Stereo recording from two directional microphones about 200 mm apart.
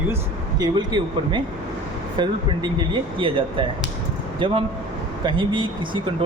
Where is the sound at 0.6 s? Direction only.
20° right (ahead or behind).